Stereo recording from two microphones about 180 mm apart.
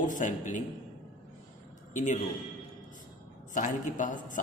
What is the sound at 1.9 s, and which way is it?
Speech, 45° left (ahead or behind).